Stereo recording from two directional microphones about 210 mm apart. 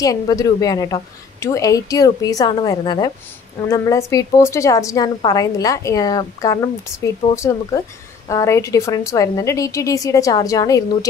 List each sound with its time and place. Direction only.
0.0 s a woman's voice: 15° left (ahead or behind)